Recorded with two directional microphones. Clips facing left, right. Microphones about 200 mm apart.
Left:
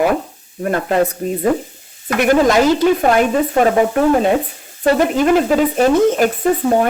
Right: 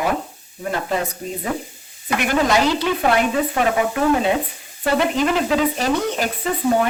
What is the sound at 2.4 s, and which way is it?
Speech, 45° left (ahead or behind).